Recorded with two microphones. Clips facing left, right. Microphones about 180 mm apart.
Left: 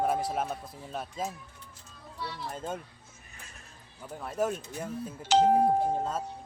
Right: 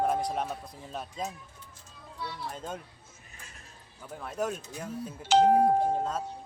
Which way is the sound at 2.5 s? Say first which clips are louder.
Left 2 dB; 5° left (ahead or behind).